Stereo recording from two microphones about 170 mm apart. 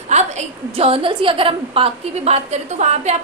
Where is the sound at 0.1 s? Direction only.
40° right (ahead or behind).